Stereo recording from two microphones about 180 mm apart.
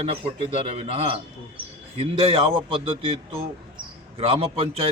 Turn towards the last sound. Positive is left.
turn(degrees=-30)  # may be behind; listen again after turning